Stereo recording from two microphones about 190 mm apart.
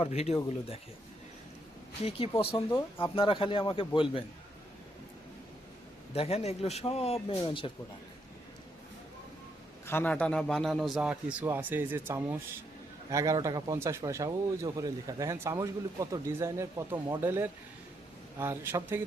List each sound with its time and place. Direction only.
0.0 s speech: 35° left (ahead or behind)
2.0 s a man's voice: 30° left (ahead or behind)
6.1 s a man's voice: 35° left (ahead or behind)
9.8 s a man's voice: 10° left (ahead or behind); by 19.0 s 10° right (ahead or behind)